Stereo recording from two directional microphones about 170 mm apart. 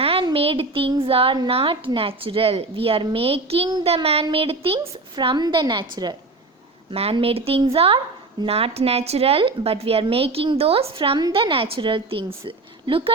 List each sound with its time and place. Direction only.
0.0 s a child's voice: 35° right (ahead or behind)
6.9 s a child's voice: 35° right (ahead or behind)